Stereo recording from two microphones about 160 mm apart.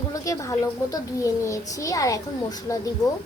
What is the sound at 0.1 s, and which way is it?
A child's voice, 20° left (ahead or behind).